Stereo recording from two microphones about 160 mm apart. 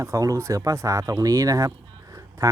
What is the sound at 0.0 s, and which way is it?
Speech, 20° right (ahead or behind).